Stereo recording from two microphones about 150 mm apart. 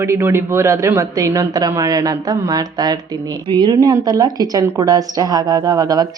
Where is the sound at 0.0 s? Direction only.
15° right (ahead or behind).